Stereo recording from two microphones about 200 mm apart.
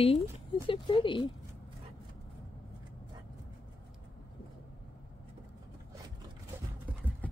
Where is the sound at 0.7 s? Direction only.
25° left (ahead or behind).